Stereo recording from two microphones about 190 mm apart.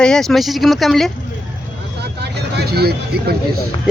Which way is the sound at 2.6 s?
55° right (ahead or behind).